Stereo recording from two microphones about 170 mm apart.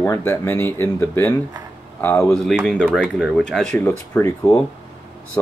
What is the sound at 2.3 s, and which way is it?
Speech, 5° left (ahead or behind).